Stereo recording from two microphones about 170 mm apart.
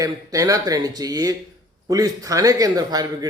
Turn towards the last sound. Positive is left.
turn(degrees=-25)  # may be behind; listen again after turning